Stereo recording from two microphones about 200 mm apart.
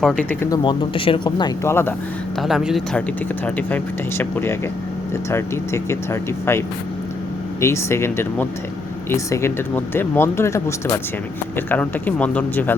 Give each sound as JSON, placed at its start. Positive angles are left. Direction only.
{"t": 0.0, "sound": "speech", "side_deg": 5}
{"t": 0.5, "sound": "speech", "side_deg": 25}
{"t": 2.4, "sound": "speech", "side_deg": 0}
{"t": 4.2, "sound": "speech", "side_deg": 10}
{"t": 7.6, "sound": "speech", "side_deg": 15}